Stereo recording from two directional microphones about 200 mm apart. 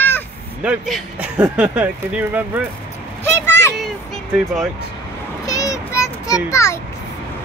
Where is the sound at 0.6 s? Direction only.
Centre (ahead or behind).